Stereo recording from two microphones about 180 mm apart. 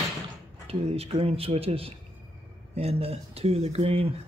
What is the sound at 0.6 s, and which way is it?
Speech, 35° right (ahead or behind).